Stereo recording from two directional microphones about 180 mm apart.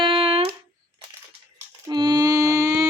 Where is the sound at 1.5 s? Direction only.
20° right (ahead or behind).